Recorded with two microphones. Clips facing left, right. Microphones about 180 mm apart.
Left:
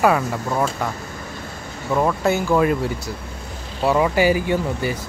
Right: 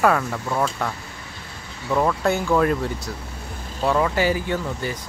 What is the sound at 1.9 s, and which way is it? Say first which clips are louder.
Speech: left 1 dB; 5° left (ahead or behind).